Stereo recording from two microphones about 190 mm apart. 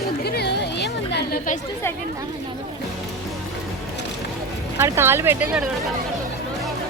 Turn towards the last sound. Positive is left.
turn(degrees=-10)  # may be behind; listen again after turning